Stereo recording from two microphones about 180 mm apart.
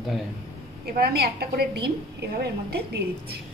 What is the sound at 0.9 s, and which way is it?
Speech, 60° right (ahead or behind).